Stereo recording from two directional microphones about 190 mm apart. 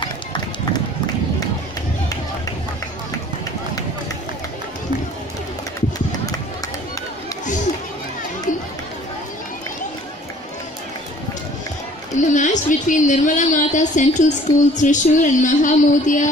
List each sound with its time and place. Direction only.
0.0 s run: 25° left (ahead or behind)
12.2 s a sound: 40° left (ahead or behind)
14.7 s speech: 40° left (ahead or behind)